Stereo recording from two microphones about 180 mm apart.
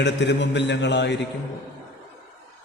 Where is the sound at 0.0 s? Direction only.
75° left (ahead or behind).